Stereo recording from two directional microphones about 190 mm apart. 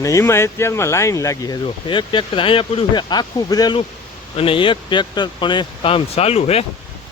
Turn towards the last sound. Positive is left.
turn(degrees=30)  # may be behind; listen again after turning